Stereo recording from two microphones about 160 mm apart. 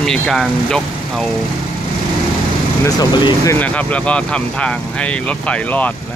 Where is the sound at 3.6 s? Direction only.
10° left (ahead or behind).